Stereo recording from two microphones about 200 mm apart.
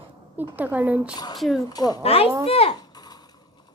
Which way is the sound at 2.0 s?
30° left (ahead or behind).